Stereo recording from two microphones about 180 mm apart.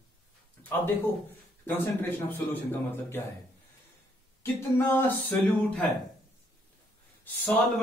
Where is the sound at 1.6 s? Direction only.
10° left (ahead or behind).